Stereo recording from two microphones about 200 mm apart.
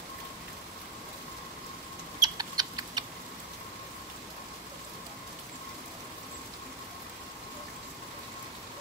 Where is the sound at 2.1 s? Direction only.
20° right (ahead or behind).